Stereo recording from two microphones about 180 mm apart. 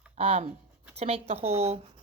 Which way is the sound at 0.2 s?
40° right (ahead or behind).